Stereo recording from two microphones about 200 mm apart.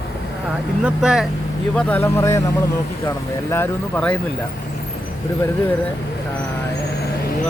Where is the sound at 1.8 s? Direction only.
10° left (ahead or behind).